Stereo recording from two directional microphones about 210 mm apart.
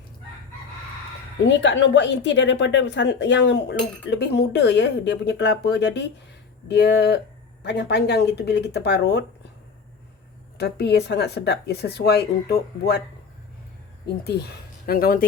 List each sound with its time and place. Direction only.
1.5 s a woman's voice: 60° left (ahead or behind)
10.6 s speech: 50° left (ahead or behind)
14.8 s speech: 45° left (ahead or behind)